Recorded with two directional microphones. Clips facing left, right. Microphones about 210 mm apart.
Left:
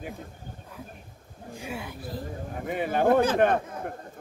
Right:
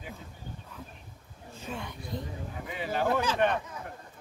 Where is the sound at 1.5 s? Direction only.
10° left (ahead or behind).